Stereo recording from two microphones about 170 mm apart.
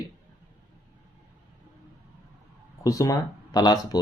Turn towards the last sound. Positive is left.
turn(degrees=20)  # may be behind; listen again after turning